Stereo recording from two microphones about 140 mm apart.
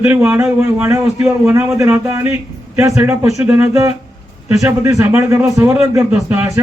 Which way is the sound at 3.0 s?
15° right (ahead or behind).